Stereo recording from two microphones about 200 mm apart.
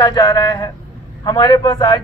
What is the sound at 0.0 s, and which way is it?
A man's voice, 20° left (ahead or behind).